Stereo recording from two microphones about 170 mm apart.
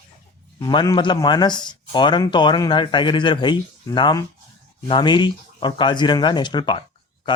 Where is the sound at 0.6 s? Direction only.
25° left (ahead or behind).